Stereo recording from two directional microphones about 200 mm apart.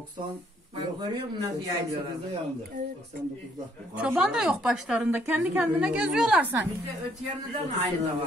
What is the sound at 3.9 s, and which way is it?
A woman's voice, 5° right (ahead or behind).